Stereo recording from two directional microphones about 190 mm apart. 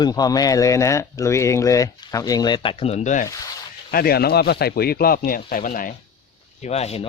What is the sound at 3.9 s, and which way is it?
Speech, 55° left (ahead or behind).